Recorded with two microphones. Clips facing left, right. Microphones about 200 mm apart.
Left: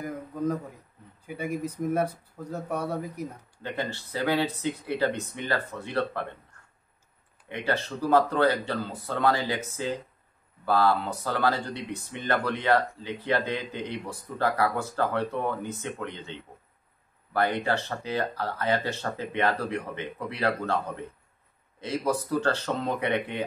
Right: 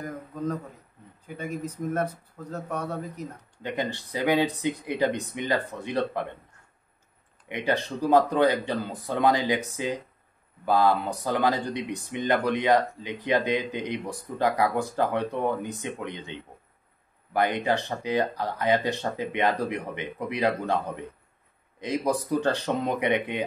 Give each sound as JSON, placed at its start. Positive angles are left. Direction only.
{"t": 0.0, "sound": "a sound", "side_deg": 10}
{"t": 1.2, "sound": "speech", "side_deg": 10}
{"t": 3.6, "sound": "speech", "side_deg": -15}
{"t": 7.4, "sound": "speech", "side_deg": -15}